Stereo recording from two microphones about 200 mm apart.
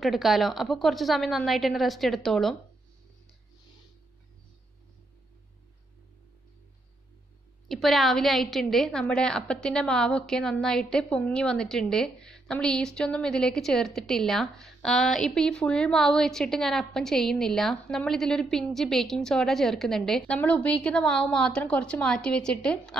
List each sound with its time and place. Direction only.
0.0 s a woman's voice: centre (ahead or behind)
7.6 s a woman's voice: centre (ahead or behind)